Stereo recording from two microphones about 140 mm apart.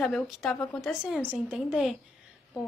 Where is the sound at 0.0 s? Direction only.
Centre (ahead or behind).